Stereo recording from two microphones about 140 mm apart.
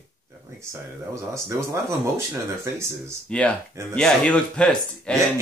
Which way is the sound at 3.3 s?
10° left (ahead or behind).